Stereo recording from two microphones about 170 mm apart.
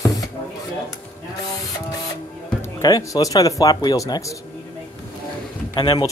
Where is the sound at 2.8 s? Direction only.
20° left (ahead or behind).